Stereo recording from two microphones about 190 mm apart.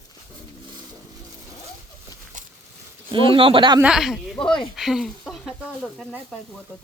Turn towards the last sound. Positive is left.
turn(degrees=5)  # may be behind; listen again after turning